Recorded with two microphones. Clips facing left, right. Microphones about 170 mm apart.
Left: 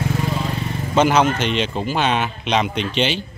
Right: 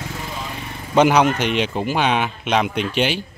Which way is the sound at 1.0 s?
10° right (ahead or behind).